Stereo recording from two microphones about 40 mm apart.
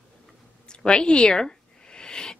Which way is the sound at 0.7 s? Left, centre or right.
Left.